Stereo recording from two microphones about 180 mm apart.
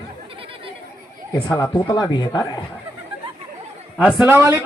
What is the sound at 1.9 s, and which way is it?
Speech, 25° left (ahead or behind).